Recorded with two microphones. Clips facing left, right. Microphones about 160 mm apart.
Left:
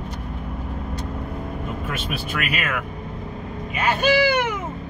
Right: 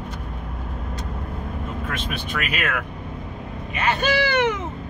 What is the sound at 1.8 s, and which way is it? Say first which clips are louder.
Speech: left 1 dB; 5° left (ahead or behind).